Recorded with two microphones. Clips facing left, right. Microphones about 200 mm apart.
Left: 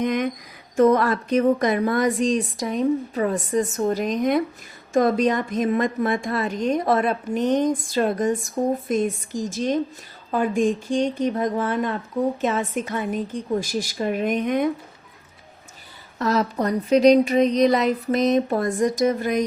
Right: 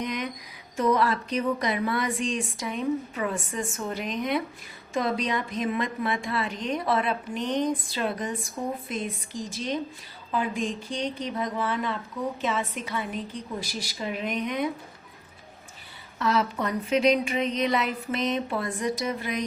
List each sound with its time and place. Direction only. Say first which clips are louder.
0.0 s a sound: left 8 dB; 50° left (ahead or behind)
0.8 s a woman's voice: left 6 dB; 50° left (ahead or behind)
16.1 s a woman's voice: left 4 dB; 40° left (ahead or behind)